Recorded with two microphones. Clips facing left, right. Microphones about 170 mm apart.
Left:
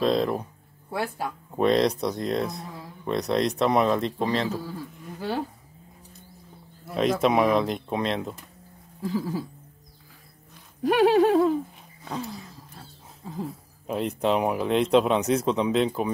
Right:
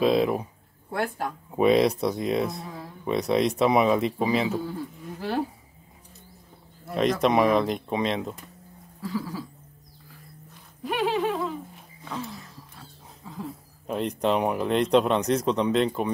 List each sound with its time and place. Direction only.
0.0 s speech: 5° right (ahead or behind)
0.9 s speech: 10° left (ahead or behind)
1.5 s speech: 5° right (ahead or behind)
6.9 s speech: centre (ahead or behind)
9.0 s a sound: 25° left (ahead or behind)
10.9 s a sound: 55° left (ahead or behind); by 12.3 s 35° left (ahead or behind)
13.8 s speech: centre (ahead or behind)